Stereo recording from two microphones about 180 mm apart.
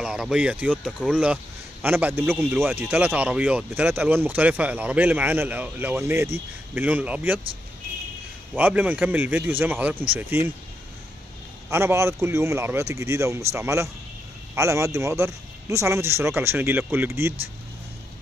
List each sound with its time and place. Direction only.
0.0 s speech: 5° right (ahead or behind)
8.5 s speech: 10° right (ahead or behind)
11.7 s speech: 15° right (ahead or behind)